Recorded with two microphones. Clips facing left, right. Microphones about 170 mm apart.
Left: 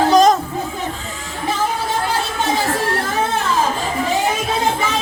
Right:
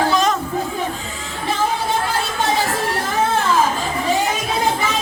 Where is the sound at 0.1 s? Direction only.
40° left (ahead or behind).